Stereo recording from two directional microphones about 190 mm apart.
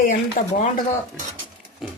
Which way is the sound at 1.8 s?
Centre (ahead or behind).